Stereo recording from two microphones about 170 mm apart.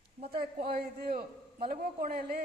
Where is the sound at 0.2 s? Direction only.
65° right (ahead or behind).